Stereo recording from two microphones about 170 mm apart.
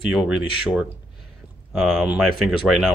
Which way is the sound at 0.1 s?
5° right (ahead or behind).